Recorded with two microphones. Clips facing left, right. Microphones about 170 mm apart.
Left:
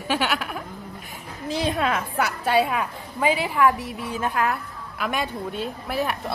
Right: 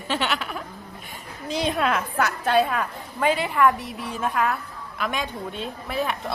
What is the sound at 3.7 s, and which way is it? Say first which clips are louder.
Speech: left 2 dB; 60° left (ahead or behind).